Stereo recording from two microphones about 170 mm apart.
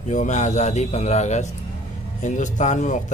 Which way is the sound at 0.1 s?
45° left (ahead or behind).